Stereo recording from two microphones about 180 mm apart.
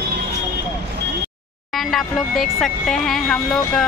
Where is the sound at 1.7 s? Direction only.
Centre (ahead or behind).